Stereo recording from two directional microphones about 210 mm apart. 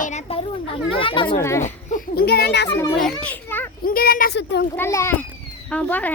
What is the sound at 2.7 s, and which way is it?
Speech, 15° left (ahead or behind).